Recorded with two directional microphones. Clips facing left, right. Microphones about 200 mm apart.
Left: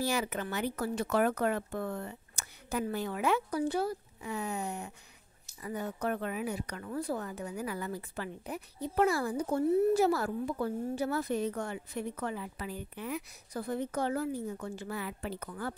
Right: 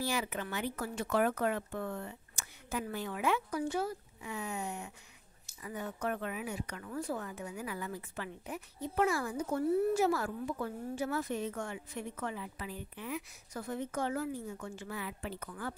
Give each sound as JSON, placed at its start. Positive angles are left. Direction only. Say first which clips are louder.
{"t": 0.0, "sound": "a woman's voice", "louder": "left 3 dB", "side_deg": 40}